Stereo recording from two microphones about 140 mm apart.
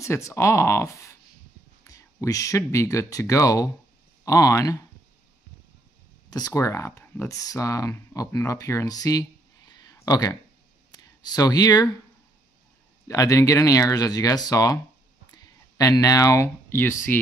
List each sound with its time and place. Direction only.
0.0 s speech: 20° left (ahead or behind)
6.3 s speech: 25° left (ahead or behind)
13.1 s speech: 25° left (ahead or behind)